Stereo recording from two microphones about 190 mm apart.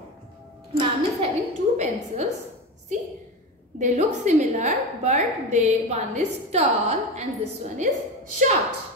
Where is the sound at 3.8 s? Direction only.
40° right (ahead or behind).